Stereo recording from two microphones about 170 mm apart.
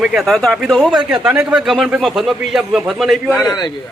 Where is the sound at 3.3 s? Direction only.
20° left (ahead or behind).